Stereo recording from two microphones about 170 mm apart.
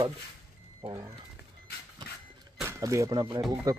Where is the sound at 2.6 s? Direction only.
15° right (ahead or behind).